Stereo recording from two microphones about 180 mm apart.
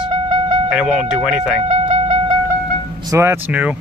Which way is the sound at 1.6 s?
40° right (ahead or behind).